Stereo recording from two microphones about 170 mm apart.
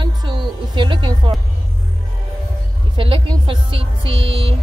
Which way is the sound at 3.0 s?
30° right (ahead or behind).